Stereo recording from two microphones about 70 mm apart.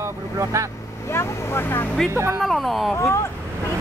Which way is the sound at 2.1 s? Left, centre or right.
Right.